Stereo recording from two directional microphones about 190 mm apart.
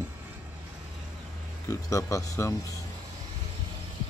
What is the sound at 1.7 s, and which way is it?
Speech, 15° left (ahead or behind).